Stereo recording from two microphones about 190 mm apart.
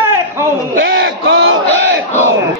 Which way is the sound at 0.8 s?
75° right (ahead or behind).